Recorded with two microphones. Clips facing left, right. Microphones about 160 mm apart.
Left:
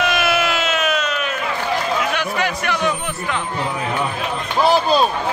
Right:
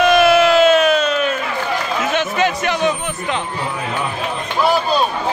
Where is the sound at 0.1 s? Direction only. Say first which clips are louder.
Right 8 dB; 35° right (ahead or behind).